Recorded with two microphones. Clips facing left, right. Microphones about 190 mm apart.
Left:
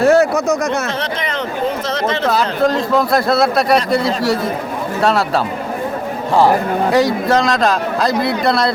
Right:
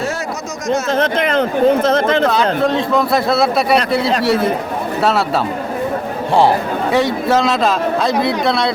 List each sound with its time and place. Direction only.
0.0 s a sound: 60° left (ahead or behind)
0.9 s speech: 50° right (ahead or behind)
2.3 s speech: centre (ahead or behind)
6.9 s speech: centre (ahead or behind)